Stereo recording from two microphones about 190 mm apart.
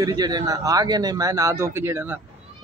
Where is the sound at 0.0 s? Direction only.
20° right (ahead or behind).